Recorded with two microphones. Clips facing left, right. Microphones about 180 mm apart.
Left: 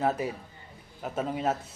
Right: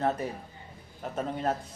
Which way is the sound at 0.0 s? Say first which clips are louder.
Left 1 dB; 10° left (ahead or behind).